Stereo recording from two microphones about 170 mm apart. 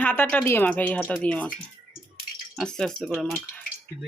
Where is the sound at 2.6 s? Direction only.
5° left (ahead or behind).